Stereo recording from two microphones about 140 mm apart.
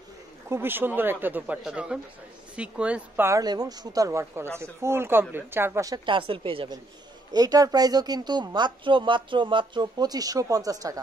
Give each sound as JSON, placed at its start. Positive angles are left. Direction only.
{"t": 0.5, "sound": "speech", "side_deg": -15}
{"t": 3.3, "sound": "speech", "side_deg": -25}
{"t": 6.0, "sound": "speech", "side_deg": -40}
{"t": 7.3, "sound": "speech", "side_deg": -25}